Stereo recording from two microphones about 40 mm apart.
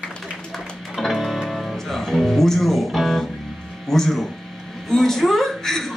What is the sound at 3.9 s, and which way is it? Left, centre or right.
Music, centre.